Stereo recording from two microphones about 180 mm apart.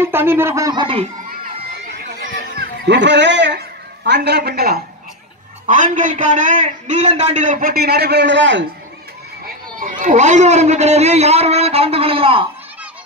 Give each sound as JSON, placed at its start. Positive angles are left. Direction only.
{"t": 0.0, "sound": "speech", "side_deg": -10}
{"t": 2.6, "sound": "a man's voice", "side_deg": -75}
{"t": 5.7, "sound": "a man's voice", "side_deg": -45}
{"t": 9.8, "sound": "a man's voice", "side_deg": -45}